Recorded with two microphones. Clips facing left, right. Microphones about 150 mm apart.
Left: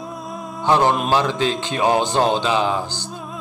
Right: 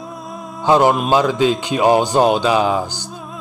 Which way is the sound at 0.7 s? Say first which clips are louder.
Right 3 dB; 15° right (ahead or behind).